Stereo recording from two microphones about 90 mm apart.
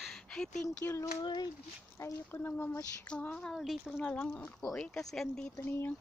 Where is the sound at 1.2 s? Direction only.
55° left (ahead or behind).